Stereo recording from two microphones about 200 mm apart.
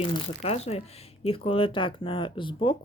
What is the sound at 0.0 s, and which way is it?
Speech, 25° left (ahead or behind).